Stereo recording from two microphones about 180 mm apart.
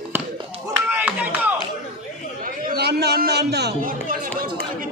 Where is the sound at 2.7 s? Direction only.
65° right (ahead or behind).